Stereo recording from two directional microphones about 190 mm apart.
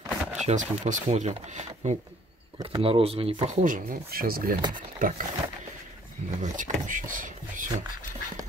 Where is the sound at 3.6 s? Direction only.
50° right (ahead or behind).